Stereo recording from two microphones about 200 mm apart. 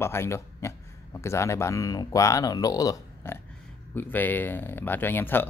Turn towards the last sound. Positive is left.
turn(degrees=10)  # may be behind; listen again after turning